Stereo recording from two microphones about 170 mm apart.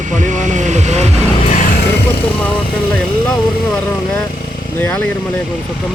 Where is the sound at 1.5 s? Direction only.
50° left (ahead or behind).